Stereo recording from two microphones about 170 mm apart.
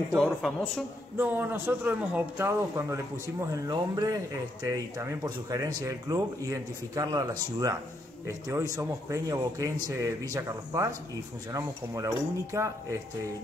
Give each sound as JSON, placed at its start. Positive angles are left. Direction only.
{"t": 0.1, "sound": "speech", "side_deg": 0}
{"t": 1.1, "sound": "speech", "side_deg": -10}